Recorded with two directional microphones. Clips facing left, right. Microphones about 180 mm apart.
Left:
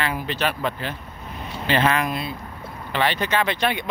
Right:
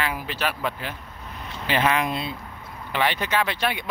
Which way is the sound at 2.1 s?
25° right (ahead or behind).